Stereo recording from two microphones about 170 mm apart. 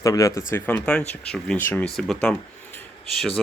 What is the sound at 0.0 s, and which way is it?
A man's voice, 20° left (ahead or behind).